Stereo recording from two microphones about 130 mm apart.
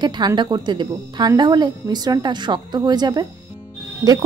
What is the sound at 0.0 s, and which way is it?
A woman's voice, 35° right (ahead or behind).